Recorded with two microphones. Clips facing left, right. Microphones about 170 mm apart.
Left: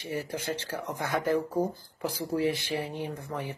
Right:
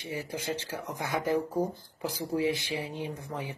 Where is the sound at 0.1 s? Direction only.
15° right (ahead or behind).